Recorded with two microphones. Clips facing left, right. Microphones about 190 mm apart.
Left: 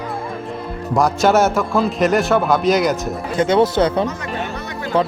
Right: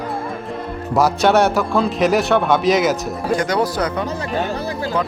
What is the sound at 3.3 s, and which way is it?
Speech, 25° left (ahead or behind).